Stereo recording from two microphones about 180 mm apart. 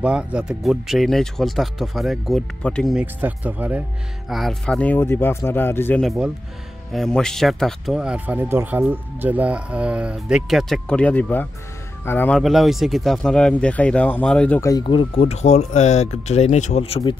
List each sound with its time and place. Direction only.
0.0 s a man's voice: 5° right (ahead or behind); by 6.0 s 10° left (ahead or behind)
6.0 s a man's voice: 5° right (ahead or behind)
14.6 s speech: 20° left (ahead or behind)